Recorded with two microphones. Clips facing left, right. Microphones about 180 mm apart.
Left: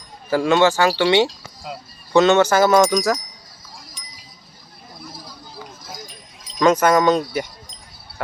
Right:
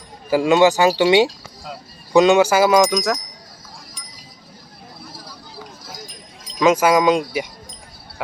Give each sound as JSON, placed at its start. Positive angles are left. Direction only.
{"t": 0.3, "sound": "speech", "side_deg": -15}
{"t": 6.6, "sound": "speech", "side_deg": -5}